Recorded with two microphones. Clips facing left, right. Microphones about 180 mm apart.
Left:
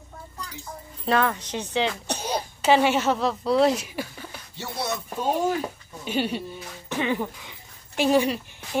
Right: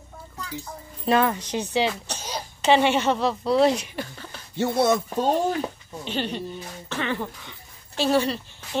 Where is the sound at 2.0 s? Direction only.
60° left (ahead or behind).